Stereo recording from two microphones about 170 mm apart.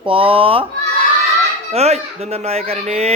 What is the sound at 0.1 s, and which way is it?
Speech, 30° right (ahead or behind).